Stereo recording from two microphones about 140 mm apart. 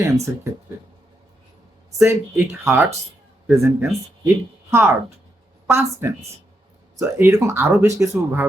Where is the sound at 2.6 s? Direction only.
20° right (ahead or behind).